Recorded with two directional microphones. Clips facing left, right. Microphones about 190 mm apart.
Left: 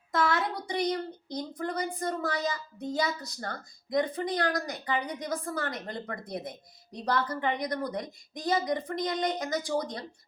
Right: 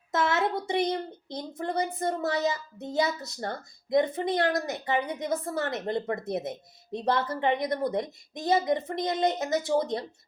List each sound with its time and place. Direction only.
0.1 s speech: 25° right (ahead or behind)